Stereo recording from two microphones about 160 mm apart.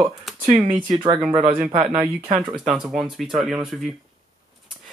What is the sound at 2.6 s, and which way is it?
Speech, 5° right (ahead or behind).